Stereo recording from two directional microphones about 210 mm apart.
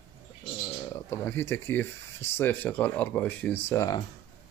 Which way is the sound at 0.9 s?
10° left (ahead or behind).